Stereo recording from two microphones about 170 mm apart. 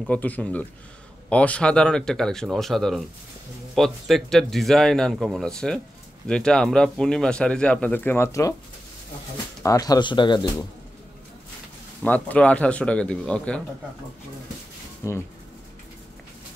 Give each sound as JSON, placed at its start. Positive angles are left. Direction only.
{"t": 0.0, "sound": "speech", "side_deg": 10}
{"t": 9.6, "sound": "speech", "side_deg": 20}
{"t": 12.0, "sound": "speech", "side_deg": 10}
{"t": 15.0, "sound": "speech", "side_deg": 15}